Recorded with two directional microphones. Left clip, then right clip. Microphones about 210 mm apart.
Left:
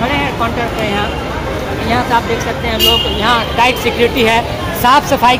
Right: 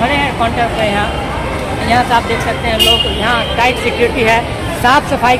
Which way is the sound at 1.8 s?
Centre (ahead or behind).